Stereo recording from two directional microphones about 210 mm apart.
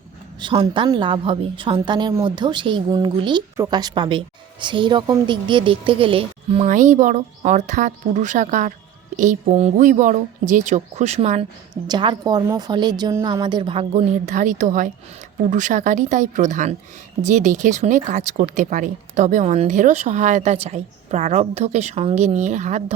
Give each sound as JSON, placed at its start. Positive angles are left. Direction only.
{"t": 0.3, "sound": "a woman's voice", "side_deg": -20}